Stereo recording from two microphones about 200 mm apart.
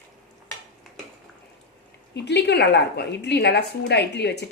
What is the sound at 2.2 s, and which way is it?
A woman's voice, 60° left (ahead or behind).